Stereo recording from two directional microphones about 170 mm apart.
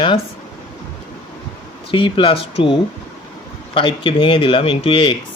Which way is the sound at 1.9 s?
30° left (ahead or behind).